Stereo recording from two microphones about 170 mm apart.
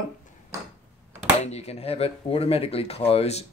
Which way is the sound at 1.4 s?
40° left (ahead or behind).